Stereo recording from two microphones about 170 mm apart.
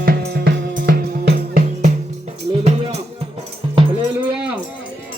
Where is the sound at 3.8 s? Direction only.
30° right (ahead or behind).